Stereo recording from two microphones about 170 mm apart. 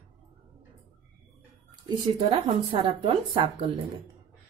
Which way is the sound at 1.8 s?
30° right (ahead or behind).